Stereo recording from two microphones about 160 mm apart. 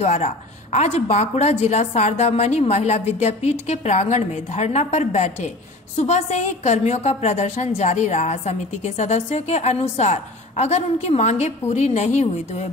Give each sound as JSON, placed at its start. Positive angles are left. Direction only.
{"t": 0.0, "sound": "a woman's voice", "side_deg": 45}